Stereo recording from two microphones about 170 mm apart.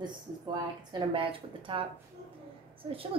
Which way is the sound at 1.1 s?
30° right (ahead or behind).